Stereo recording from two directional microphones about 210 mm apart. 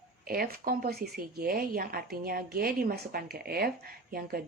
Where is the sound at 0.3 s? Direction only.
45° right (ahead or behind).